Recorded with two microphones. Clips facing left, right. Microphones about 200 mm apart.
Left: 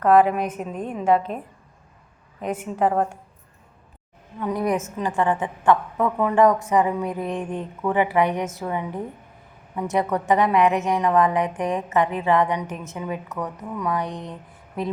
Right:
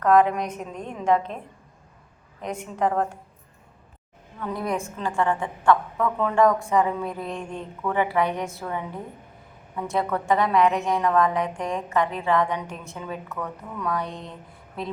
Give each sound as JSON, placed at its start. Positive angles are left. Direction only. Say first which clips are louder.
{"t": 0.0, "sound": "a woman's voice", "louder": "left 2 dB", "side_deg": 10}
{"t": 2.4, "sound": "a woman's voice", "louder": "left 3 dB", "side_deg": 10}
{"t": 4.4, "sound": "a woman's voice", "louder": "left 4 dB", "side_deg": 15}